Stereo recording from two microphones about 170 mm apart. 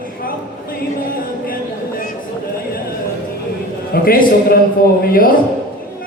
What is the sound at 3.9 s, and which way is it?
A man's voice, 60° left (ahead or behind).